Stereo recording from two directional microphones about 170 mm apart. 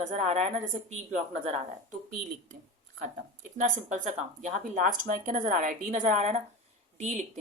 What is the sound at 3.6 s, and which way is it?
Speech, 45° right (ahead or behind).